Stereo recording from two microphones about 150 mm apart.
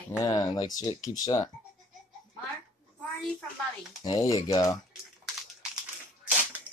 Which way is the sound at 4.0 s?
25° left (ahead or behind).